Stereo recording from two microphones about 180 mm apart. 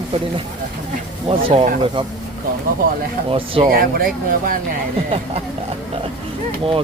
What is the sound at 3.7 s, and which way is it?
Speech, 55° right (ahead or behind).